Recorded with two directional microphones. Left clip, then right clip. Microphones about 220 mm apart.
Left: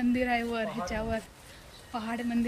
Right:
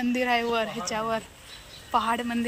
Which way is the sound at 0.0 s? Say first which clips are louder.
Right 4 dB; 10° left (ahead or behind).